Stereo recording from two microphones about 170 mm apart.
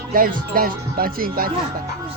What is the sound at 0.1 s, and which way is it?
Speech, 55° right (ahead or behind).